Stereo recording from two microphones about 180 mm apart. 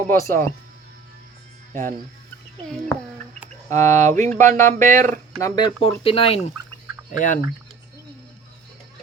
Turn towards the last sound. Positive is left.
turn(degrees=45)  # may be behind; listen again after turning